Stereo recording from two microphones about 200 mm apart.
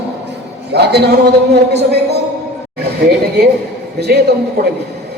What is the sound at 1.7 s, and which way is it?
Speech, 55° right (ahead or behind).